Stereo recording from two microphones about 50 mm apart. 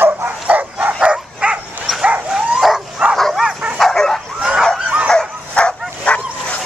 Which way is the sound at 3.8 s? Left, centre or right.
Centre.